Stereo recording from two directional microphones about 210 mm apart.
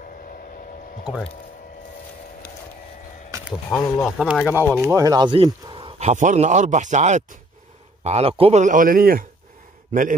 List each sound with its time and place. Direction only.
3.7 s a man's voice: centre (ahead or behind); by 9.2 s 45° right (ahead or behind)